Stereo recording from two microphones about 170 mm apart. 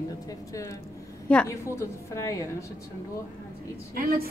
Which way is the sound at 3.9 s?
60° right (ahead or behind).